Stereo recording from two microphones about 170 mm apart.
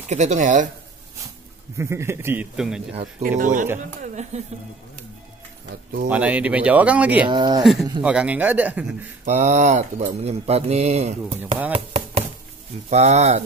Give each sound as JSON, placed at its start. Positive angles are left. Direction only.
{"t": 0.1, "sound": "speech", "side_deg": -45}
{"t": 1.8, "sound": "speech", "side_deg": -15}
{"t": 2.5, "sound": "speech", "side_deg": -5}
{"t": 2.9, "sound": "speech", "side_deg": -40}
{"t": 6.0, "sound": "speech", "side_deg": -10}
{"t": 7.2, "sound": "speech", "side_deg": -25}
{"t": 8.0, "sound": "speech", "side_deg": -5}
{"t": 9.2, "sound": "speech", "side_deg": -45}
{"t": 11.7, "sound": "a sound", "side_deg": -35}
{"t": 12.9, "sound": "speech", "side_deg": -40}